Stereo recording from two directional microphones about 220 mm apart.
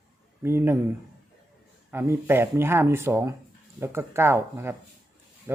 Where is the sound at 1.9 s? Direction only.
10° right (ahead or behind).